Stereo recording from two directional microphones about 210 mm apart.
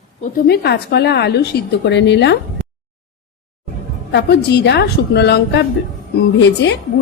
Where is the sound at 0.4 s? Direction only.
50° left (ahead or behind).